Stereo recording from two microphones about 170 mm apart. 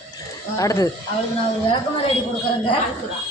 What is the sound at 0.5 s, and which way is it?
Speech, 20° left (ahead or behind).